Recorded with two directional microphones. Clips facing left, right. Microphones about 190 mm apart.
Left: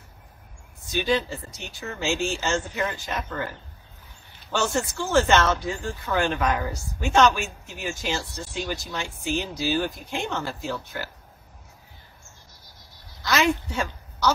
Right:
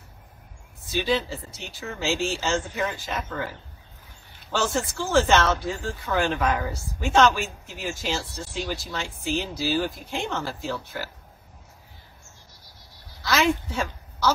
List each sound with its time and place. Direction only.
0.8 s speech: centre (ahead or behind)
13.2 s a woman's voice: centre (ahead or behind)